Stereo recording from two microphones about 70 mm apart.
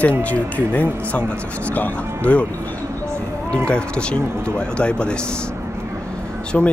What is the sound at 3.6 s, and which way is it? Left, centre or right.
Speech, centre.